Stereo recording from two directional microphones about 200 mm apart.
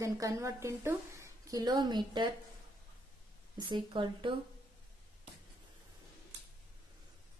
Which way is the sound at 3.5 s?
20° right (ahead or behind).